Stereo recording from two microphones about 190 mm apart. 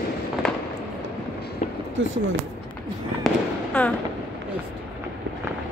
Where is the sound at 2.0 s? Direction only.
80° right.